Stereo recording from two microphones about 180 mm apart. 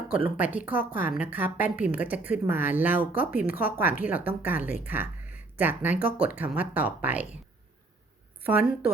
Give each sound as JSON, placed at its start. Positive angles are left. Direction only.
{"t": 0.2, "sound": "speech", "side_deg": -10}
{"t": 3.4, "sound": "speech", "side_deg": 55}
{"t": 3.7, "sound": "speech", "side_deg": -10}
{"t": 8.4, "sound": "a woman's voice", "side_deg": -10}